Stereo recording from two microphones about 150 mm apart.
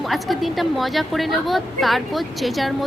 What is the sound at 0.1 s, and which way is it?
A woman's voice, centre (ahead or behind).